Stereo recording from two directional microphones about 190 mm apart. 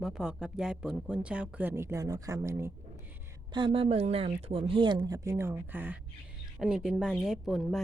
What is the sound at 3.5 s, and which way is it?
A woman's voice, 30° right (ahead or behind).